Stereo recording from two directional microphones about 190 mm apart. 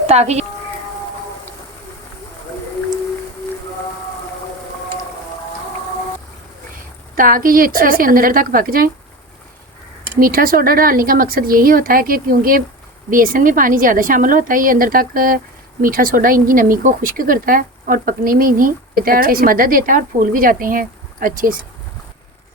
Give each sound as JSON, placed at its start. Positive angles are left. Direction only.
{"t": 0.1, "sound": "speech", "side_deg": -35}
{"t": 7.2, "sound": "speech", "side_deg": -45}
{"t": 10.2, "sound": "speech", "side_deg": -50}